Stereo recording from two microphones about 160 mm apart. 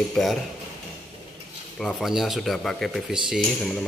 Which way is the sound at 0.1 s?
Centre (ahead or behind).